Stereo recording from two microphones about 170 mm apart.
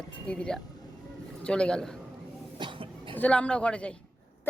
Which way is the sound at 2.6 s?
30° right (ahead or behind).